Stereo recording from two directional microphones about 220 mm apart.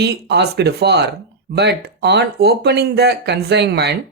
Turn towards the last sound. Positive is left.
turn(degrees=-50)  # may be behind; listen again after turning